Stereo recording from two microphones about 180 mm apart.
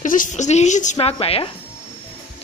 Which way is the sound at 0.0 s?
45° left (ahead or behind).